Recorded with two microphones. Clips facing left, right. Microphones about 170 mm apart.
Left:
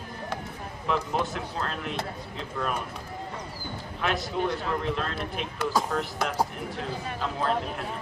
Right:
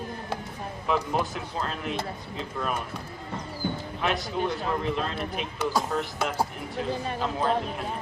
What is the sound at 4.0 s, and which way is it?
A man's voice, centre (ahead or behind).